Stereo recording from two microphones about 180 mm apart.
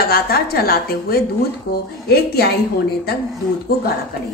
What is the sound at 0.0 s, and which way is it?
A woman's voice, 60° left (ahead or behind).